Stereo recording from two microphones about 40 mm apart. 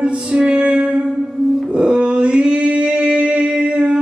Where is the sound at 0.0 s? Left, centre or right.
Right.